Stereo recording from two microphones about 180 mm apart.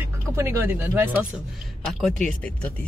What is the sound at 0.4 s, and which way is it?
Speech, 15° right (ahead or behind).